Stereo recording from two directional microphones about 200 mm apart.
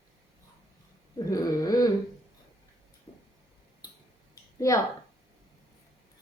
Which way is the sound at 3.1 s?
30° left (ahead or behind).